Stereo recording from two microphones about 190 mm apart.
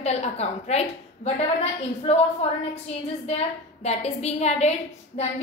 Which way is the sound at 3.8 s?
35° left (ahead or behind).